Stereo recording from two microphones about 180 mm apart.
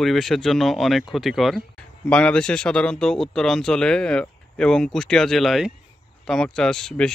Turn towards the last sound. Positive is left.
turn(degrees=5)  # may be behind; listen again after turning